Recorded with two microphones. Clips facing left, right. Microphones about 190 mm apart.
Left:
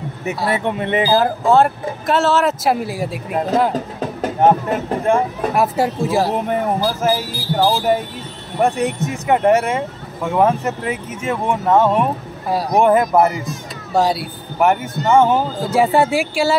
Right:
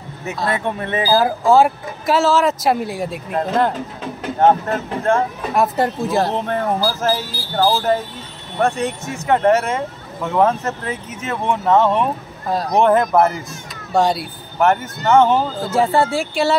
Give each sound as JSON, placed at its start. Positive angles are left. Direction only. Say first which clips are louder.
{"t": 0.6, "sound": "speech", "louder": "left 3 dB", "side_deg": 20}
{"t": 1.2, "sound": "a man's voice", "louder": "even", "side_deg": 0}